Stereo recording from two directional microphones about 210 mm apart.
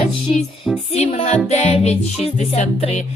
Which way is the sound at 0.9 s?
30° left (ahead or behind).